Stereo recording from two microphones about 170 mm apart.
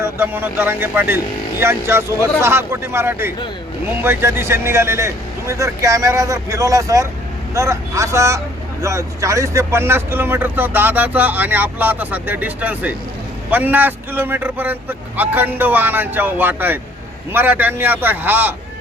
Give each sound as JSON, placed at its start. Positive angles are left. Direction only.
{"t": 0.0, "sound": "speech", "side_deg": -15}